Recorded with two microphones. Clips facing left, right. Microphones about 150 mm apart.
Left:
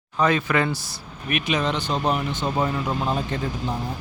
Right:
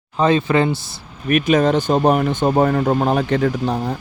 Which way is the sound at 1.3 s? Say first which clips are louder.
Right 9 dB; 45° right (ahead or behind).